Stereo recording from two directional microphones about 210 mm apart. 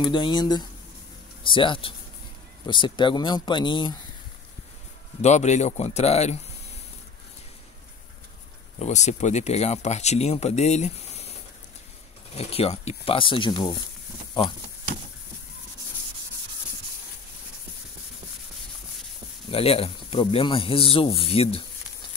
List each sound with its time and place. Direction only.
0.0 s speech: 20° left (ahead or behind)
5.2 s speech: 35° left (ahead or behind)
8.7 s speech: 35° left (ahead or behind)
12.4 s speech: 30° left (ahead or behind)
19.5 s speech: 25° left (ahead or behind)